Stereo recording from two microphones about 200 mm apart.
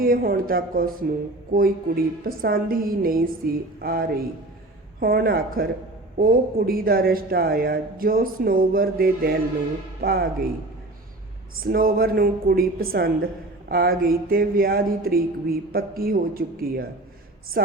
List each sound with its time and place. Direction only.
0.0 s speech: 45° right (ahead or behind)
11.6 s speech: 45° right (ahead or behind)